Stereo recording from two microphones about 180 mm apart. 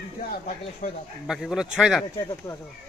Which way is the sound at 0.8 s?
45° left (ahead or behind).